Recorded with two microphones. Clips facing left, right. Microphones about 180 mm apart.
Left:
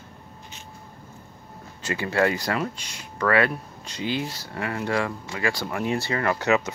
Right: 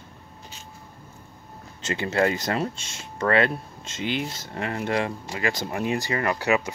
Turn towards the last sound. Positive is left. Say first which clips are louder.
# left 1 dB
turn(degrees=-15)  # may be behind; listen again after turning